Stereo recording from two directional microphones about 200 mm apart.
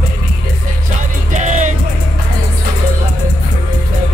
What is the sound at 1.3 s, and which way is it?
Music, 40° right (ahead or behind).